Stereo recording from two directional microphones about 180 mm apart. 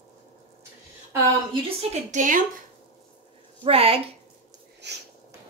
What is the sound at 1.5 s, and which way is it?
Speech, 40° right (ahead or behind).